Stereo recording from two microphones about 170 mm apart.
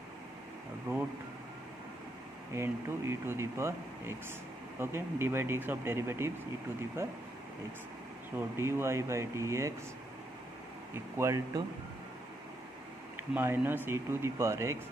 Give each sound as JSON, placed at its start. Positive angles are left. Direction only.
{"t": 2.5, "sound": "speech", "side_deg": -15}
{"t": 4.7, "sound": "speech", "side_deg": -15}
{"t": 8.4, "sound": "speech", "side_deg": -15}
{"t": 10.9, "sound": "speech", "side_deg": -15}
{"t": 13.1, "sound": "speech", "side_deg": -10}